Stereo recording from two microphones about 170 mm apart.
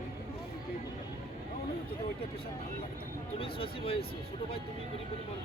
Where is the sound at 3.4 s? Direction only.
30° left (ahead or behind).